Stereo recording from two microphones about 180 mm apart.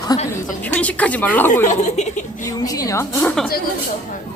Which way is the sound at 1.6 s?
40° left (ahead or behind).